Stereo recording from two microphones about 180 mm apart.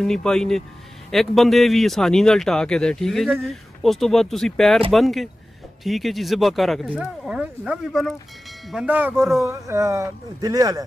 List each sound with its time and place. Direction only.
0.0 s speech: 5° left (ahead or behind)
9.4 s speech: 15° right (ahead or behind)